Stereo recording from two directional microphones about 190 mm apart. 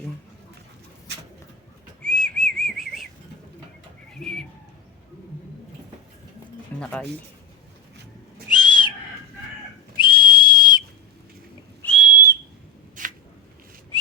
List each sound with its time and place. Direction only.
2.0 s whistling: 5° left (ahead or behind)
4.2 s bird: 5° left (ahead or behind)
6.7 s music: 5° left (ahead or behind)
8.5 s whistle: 25° left (ahead or behind)
10.0 s whistle: 25° left (ahead or behind)
11.8 s whistle: 5° left (ahead or behind)
13.0 s a sound: 45° right (ahead or behind)